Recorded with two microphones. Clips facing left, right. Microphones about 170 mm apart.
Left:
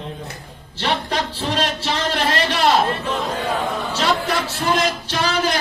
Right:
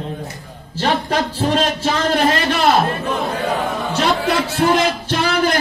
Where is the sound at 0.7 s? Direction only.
45° right (ahead or behind).